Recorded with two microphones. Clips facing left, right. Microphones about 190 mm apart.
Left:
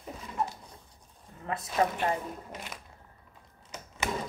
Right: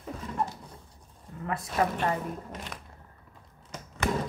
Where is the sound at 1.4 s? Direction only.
25° left (ahead or behind).